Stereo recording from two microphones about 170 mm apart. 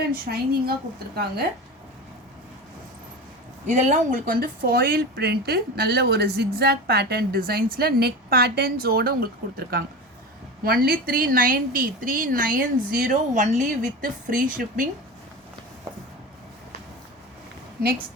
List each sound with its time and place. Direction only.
0.1 s speech: 65° right (ahead or behind)
3.7 s speech: 45° right (ahead or behind)